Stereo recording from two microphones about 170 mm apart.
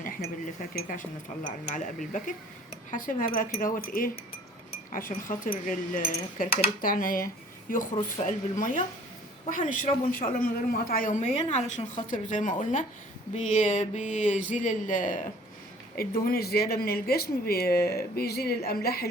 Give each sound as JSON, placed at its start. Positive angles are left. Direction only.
{"t": 0.7, "sound": "speech", "side_deg": 55}
{"t": 16.0, "sound": "speech", "side_deg": 65}